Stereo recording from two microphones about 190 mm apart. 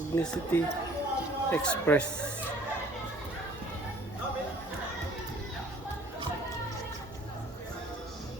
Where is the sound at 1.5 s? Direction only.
5° left (ahead or behind).